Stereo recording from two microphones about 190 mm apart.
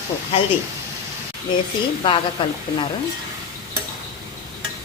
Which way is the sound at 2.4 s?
25° left (ahead or behind).